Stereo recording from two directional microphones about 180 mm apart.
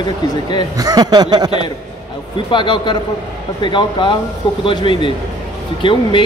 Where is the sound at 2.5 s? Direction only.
25° left (ahead or behind).